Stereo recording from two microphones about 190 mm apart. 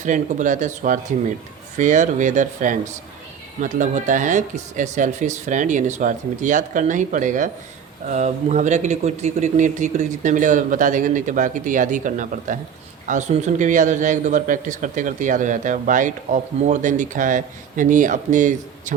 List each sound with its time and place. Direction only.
0.0 s a man's voice: 40° right (ahead or behind)